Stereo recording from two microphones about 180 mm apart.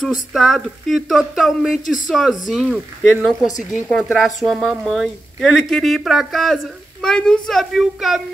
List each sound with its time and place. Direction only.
0.0 s a woman's voice: centre (ahead or behind)
3.4 s a woman's voice: 45° left (ahead or behind)
3.9 s a woman's voice: centre (ahead or behind)